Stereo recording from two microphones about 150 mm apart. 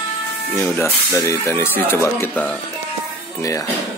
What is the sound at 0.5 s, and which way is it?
Speech, 10° left (ahead or behind).